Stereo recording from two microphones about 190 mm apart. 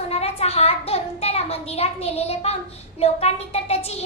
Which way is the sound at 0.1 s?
35° left (ahead or behind).